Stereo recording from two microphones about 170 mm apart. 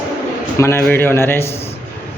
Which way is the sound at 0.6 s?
10° left (ahead or behind).